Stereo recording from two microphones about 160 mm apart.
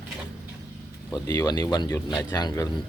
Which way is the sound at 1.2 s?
20° left (ahead or behind).